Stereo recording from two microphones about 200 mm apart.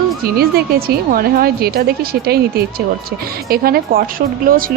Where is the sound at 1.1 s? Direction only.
50° right (ahead or behind).